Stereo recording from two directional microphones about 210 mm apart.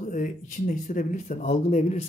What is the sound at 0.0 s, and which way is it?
Speech, 40° left (ahead or behind).